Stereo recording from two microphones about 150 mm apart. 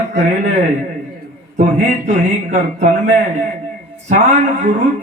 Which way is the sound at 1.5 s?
50° right (ahead or behind).